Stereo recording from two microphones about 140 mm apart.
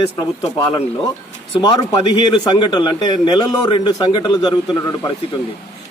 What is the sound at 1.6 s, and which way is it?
A man's voice, 35° left (ahead or behind).